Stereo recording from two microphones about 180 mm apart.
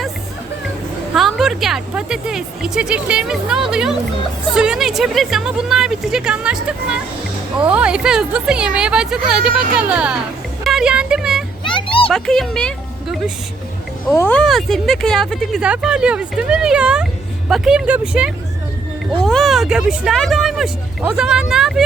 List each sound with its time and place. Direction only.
1.1 s speech: centre (ahead or behind)
11.6 s children playing: 30° left (ahead or behind)
12.1 s speech: centre (ahead or behind)